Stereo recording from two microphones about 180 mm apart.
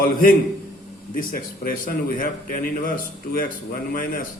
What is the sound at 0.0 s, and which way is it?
A man's voice, 50° left (ahead or behind).